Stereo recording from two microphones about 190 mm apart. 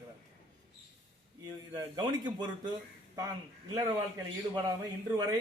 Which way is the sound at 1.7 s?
20° right (ahead or behind).